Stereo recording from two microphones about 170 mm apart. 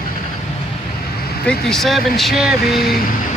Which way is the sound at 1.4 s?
5° left (ahead or behind).